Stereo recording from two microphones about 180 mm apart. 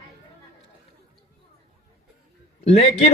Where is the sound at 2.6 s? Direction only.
35° left (ahead or behind).